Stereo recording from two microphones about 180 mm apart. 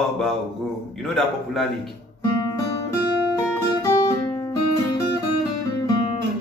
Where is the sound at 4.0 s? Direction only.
20° left (ahead or behind).